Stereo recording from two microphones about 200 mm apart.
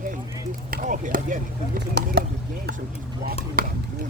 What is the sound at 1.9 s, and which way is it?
Speech, 55° right (ahead or behind).